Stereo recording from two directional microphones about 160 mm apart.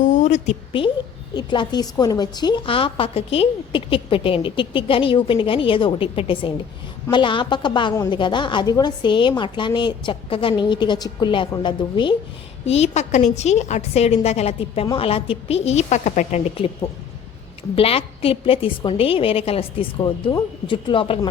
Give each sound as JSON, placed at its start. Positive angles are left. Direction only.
{"t": 0.0, "sound": "a sound", "side_deg": 50}
{"t": 1.3, "sound": "a woman's voice", "side_deg": 30}
{"t": 12.6, "sound": "a woman's voice", "side_deg": 40}